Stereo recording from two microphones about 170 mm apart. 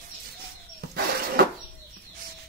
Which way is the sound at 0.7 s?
65° right (ahead or behind).